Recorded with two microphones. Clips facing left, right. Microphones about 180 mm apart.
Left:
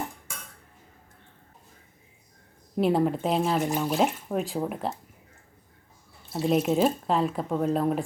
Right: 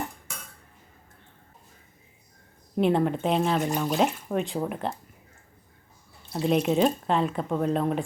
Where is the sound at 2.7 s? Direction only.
5° left (ahead or behind).